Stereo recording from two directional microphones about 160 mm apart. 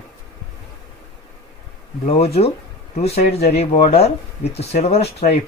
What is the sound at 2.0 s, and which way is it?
Speech, 40° left (ahead or behind).